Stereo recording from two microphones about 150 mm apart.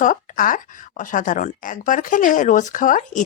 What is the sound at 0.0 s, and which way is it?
Speech, 60° left (ahead or behind).